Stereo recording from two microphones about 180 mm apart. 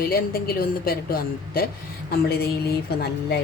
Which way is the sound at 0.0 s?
55° left (ahead or behind).